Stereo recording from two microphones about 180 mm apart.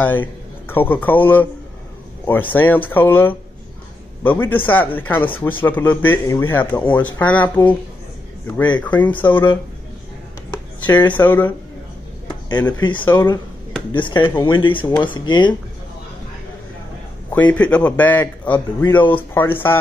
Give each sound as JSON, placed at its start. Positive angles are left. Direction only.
{"t": 0.0, "sound": "a man's voice", "side_deg": 10}
{"t": 8.7, "sound": "a man's voice", "side_deg": 10}
{"t": 10.9, "sound": "a man's voice", "side_deg": 10}
{"t": 12.8, "sound": "speech", "side_deg": 25}
{"t": 17.3, "sound": "a man's voice", "side_deg": 10}